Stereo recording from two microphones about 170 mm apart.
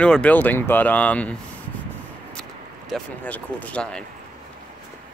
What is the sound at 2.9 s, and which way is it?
Speech, 10° left (ahead or behind).